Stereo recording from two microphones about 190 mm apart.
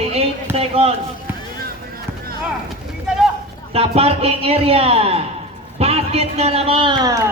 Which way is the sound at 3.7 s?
30° right (ahead or behind).